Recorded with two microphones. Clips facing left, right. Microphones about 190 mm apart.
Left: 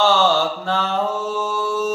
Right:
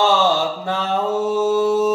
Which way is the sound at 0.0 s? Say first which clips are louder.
Even; 20° right (ahead or behind).